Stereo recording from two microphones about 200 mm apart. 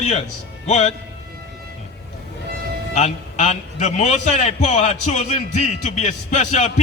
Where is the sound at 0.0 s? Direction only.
35° left (ahead or behind).